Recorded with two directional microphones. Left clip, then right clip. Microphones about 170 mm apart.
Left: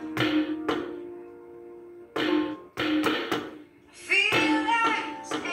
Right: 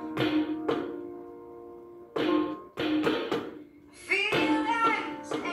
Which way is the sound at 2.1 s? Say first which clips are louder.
Left 1 dB; 20° left (ahead or behind).